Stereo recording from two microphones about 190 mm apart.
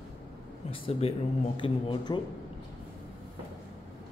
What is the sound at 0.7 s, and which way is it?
Speech, 30° left (ahead or behind).